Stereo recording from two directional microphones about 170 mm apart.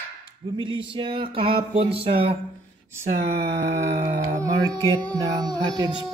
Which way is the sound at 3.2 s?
90° right.